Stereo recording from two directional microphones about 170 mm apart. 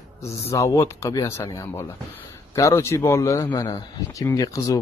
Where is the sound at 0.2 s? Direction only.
15° left (ahead or behind).